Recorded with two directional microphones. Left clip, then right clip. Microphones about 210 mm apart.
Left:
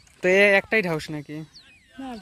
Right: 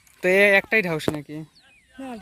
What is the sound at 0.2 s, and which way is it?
Speech, 5° left (ahead or behind).